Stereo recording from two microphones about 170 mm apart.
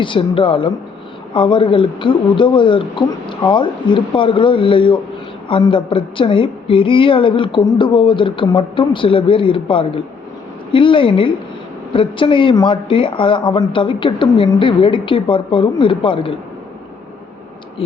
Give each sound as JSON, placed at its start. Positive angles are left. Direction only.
{"t": 0.0, "sound": "a woman's voice", "side_deg": 30}